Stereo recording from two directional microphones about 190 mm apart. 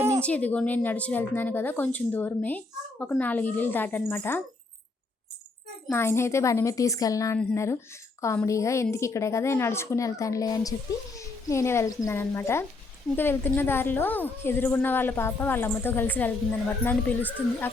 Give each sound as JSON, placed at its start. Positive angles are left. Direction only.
{"t": 0.2, "sound": "a woman's voice", "side_deg": 5}
{"t": 5.9, "sound": "a woman's voice", "side_deg": 15}